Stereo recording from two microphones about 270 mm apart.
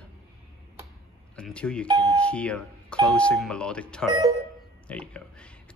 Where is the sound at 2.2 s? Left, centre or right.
Centre.